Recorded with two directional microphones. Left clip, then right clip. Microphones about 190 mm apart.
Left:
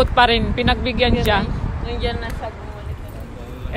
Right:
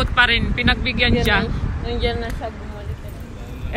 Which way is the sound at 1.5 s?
35° right (ahead or behind).